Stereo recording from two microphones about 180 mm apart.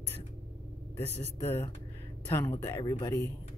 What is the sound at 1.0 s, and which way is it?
Speech, 35° right (ahead or behind).